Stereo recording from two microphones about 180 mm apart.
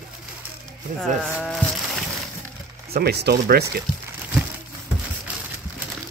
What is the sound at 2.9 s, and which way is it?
Speech, 65° right (ahead or behind).